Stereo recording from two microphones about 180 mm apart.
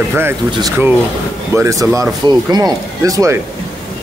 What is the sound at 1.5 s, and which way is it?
Speech, 15° right (ahead or behind).